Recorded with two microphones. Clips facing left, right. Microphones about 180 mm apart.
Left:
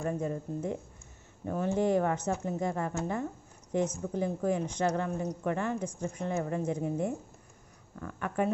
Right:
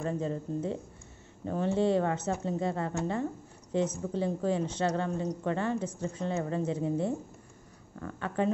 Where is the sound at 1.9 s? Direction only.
25° right (ahead or behind).